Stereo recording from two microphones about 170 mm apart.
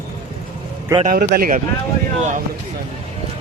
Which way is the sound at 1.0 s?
60° right (ahead or behind).